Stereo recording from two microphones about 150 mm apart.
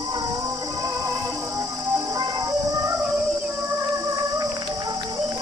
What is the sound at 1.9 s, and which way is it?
Music, 25° right (ahead or behind).